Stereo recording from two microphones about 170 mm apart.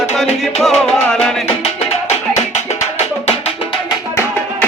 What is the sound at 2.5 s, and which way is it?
Music, 40° left (ahead or behind).